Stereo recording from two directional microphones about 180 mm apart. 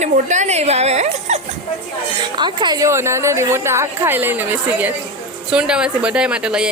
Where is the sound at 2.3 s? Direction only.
25° right (ahead or behind).